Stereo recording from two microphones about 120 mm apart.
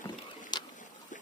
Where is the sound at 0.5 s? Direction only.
35° left (ahead or behind).